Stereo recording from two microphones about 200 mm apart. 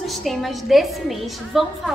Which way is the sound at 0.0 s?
Centre (ahead or behind).